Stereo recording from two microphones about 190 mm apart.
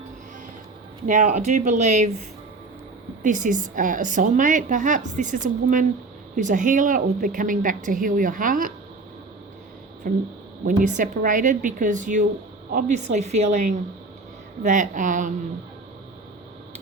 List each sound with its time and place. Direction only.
1.0 s a woman's voice: 40° right (ahead or behind)
3.2 s a woman's voice: 40° right (ahead or behind)
10.0 s a woman's voice: 50° right (ahead or behind)